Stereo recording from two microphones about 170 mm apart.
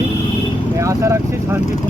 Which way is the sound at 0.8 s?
20° right (ahead or behind).